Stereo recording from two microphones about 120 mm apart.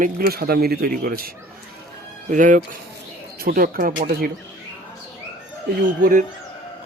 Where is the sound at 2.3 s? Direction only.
90° right.